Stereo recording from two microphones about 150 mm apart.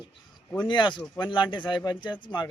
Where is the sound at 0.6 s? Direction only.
30° left (ahead or behind).